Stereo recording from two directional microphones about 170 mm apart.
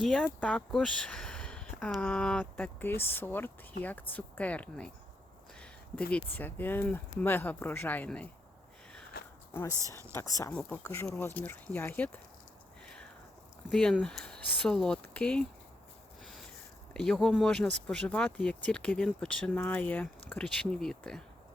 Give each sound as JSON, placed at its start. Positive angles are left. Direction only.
{"t": 0.0, "sound": "speech", "side_deg": 5}
{"t": 9.2, "sound": "a sound", "side_deg": 65}
{"t": 9.5, "sound": "speech", "side_deg": 15}
{"t": 12.8, "sound": "a sound", "side_deg": 5}
{"t": 13.7, "sound": "speech", "side_deg": 5}
{"t": 16.9, "sound": "speech", "side_deg": 5}